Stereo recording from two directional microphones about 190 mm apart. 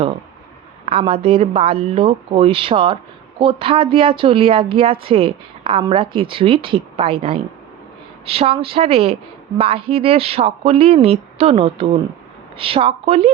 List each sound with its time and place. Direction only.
0.9 s a woman's voice: 30° right (ahead or behind)